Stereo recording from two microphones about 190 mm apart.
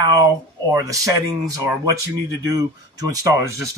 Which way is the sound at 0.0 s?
20° right (ahead or behind).